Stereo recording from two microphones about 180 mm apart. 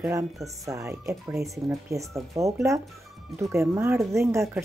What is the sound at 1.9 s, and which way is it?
Speech, 15° right (ahead or behind).